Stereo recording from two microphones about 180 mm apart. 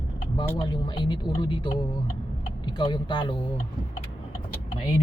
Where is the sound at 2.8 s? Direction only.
25° left (ahead or behind).